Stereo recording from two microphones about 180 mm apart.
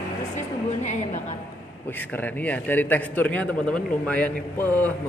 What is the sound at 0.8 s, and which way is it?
Speech, 40° left (ahead or behind).